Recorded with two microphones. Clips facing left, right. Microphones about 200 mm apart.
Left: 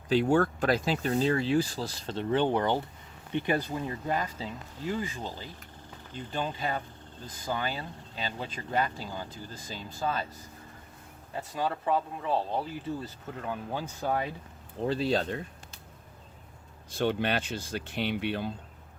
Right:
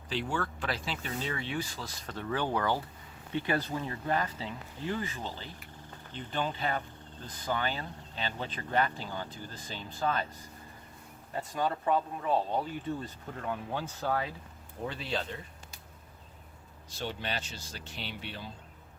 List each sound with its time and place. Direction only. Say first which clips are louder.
0.1 s speech: left 10 dB; 45° left (ahead or behind); by 10.2 s 10° left (ahead or behind)
11.3 s speech: even; 5° left (ahead or behind)
14.8 s speech: left 8 dB; 35° left (ahead or behind)
16.9 s speech: left 9 dB; 55° left (ahead or behind)